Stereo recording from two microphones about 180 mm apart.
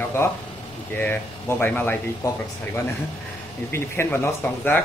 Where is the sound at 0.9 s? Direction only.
10° left (ahead or behind).